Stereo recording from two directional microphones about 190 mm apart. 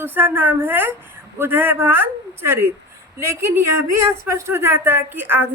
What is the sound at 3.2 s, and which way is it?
A woman's voice, 15° right (ahead or behind).